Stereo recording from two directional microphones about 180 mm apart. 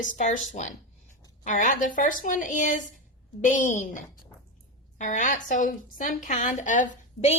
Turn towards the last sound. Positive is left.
turn(degrees=45)  # may be behind; listen again after turning